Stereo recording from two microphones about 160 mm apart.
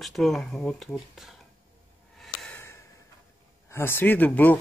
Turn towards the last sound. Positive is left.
turn(degrees=10)  # may be behind; listen again after turning